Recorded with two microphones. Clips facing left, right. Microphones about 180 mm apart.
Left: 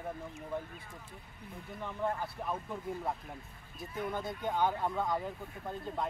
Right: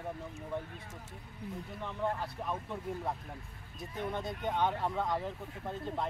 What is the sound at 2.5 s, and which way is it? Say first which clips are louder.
Speech: even; 5° left (ahead or behind).